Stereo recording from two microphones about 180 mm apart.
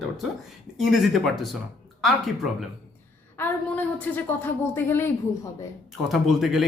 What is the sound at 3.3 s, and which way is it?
A woman's voice, 10° left (ahead or behind).